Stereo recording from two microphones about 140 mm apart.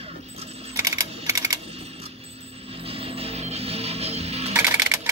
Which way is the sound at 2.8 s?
40° right (ahead or behind).